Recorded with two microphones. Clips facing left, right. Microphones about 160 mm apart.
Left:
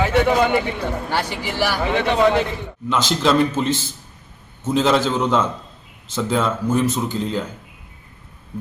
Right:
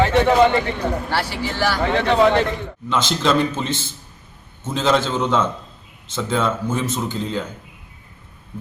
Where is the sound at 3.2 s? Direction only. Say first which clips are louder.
Left 1 dB; 5° left (ahead or behind).